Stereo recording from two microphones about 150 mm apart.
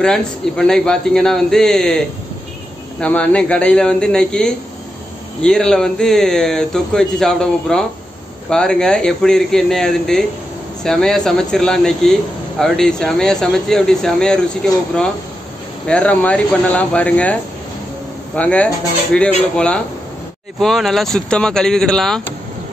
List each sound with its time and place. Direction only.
0.0 s speech: 5° left (ahead or behind)
15.9 s speech: 10° left (ahead or behind)